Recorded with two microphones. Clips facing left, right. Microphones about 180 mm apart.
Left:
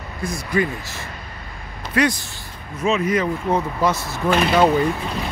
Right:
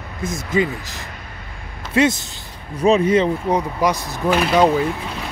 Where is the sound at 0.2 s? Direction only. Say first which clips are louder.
Right 2 dB; 20° right (ahead or behind).